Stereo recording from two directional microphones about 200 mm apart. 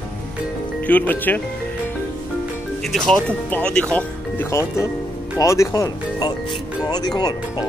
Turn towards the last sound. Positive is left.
turn(degrees=20)  # may be behind; listen again after turning